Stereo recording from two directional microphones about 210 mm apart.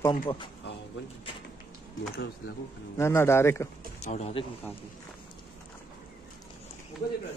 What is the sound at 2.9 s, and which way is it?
Speech, 10° left (ahead or behind).